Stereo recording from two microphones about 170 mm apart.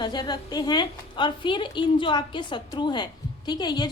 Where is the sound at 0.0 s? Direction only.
25° left (ahead or behind).